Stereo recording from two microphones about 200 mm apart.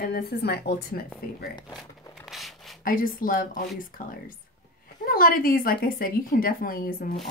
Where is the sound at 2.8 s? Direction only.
45° left (ahead or behind).